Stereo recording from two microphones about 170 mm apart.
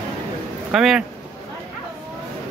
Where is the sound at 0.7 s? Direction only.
Centre (ahead or behind).